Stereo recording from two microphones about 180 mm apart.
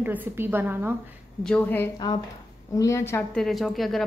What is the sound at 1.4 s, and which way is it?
A woman's voice, 10° left (ahead or behind).